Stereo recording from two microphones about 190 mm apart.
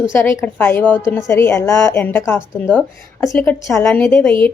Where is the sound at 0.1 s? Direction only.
10° left (ahead or behind).